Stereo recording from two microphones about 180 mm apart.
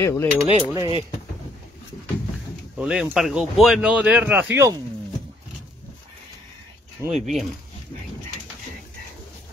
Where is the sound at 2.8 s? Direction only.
5° right (ahead or behind).